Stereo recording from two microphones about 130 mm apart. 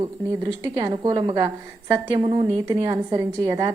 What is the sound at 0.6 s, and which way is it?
A woman's voice, 35° right (ahead or behind).